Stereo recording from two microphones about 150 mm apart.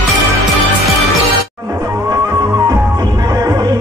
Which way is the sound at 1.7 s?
20° right (ahead or behind).